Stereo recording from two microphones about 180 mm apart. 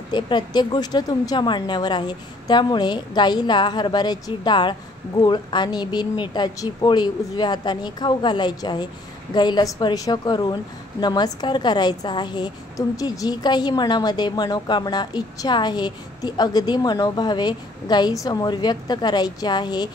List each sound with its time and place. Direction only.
0.1 s a woman's voice: 25° left (ahead or behind)